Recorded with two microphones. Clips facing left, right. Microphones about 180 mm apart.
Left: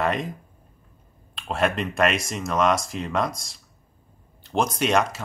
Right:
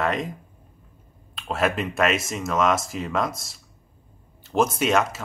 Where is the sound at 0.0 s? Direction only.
Centre (ahead or behind).